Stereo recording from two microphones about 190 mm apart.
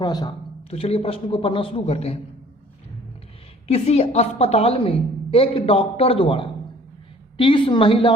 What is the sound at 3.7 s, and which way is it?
A woman's voice, 35° left (ahead or behind).